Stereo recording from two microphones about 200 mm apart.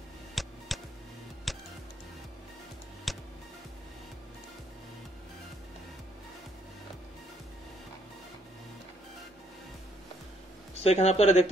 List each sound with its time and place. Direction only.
0.3 s music: centre (ahead or behind)
3.1 s music: centre (ahead or behind)
10.7 s speech: 30° left (ahead or behind)